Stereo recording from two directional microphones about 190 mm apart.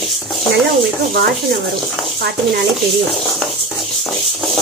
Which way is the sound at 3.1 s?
Centre (ahead or behind).